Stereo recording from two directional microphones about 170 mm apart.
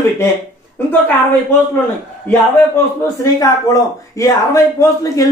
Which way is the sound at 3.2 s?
20° left (ahead or behind).